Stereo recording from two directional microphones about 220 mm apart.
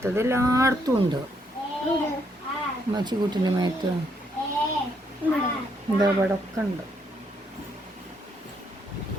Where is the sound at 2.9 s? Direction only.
20° right (ahead or behind).